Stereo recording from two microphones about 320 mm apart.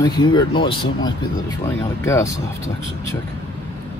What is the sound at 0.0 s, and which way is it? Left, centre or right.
Speech, centre.